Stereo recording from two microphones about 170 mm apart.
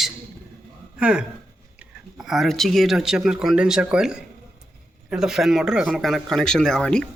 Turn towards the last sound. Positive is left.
turn(degrees=5)  # may be behind; listen again after turning